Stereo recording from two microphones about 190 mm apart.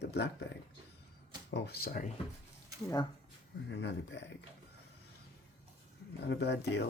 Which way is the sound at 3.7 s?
70° left (ahead or behind).